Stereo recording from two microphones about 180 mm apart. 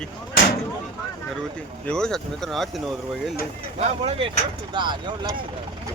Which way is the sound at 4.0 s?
30° right (ahead or behind).